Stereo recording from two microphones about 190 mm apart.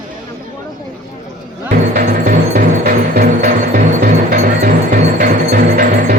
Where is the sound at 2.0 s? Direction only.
45° right (ahead or behind).